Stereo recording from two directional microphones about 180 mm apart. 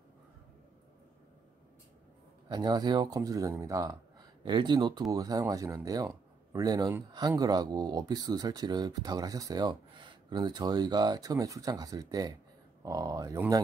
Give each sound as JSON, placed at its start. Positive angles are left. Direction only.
{"t": 2.4, "sound": "speech", "side_deg": -25}